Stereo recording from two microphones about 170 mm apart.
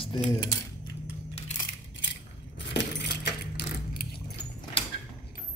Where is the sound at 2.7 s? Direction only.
85° left; by 4.1 s 65° left (ahead or behind).